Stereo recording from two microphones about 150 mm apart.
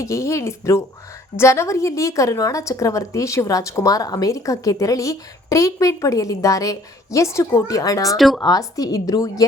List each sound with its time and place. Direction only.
0.0 s a woman's voice: 20° left (ahead or behind)
8.1 s speech: centre (ahead or behind)
8.4 s a woman's voice: 25° left (ahead or behind)